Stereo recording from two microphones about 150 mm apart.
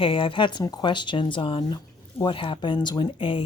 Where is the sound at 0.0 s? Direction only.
35° left (ahead or behind).